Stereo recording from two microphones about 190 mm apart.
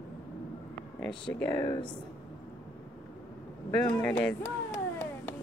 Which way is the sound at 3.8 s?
5° left (ahead or behind).